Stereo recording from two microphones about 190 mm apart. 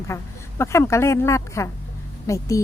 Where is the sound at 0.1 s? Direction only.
15° left (ahead or behind).